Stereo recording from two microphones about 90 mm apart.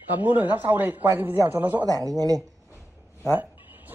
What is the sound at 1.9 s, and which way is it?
Speech, 45° right (ahead or behind).